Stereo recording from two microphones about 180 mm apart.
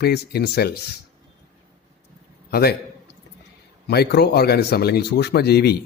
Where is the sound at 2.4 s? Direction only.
60° left (ahead or behind).